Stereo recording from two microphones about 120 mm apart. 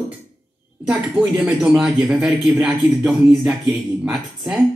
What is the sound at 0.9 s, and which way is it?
Speech, 5° right (ahead or behind).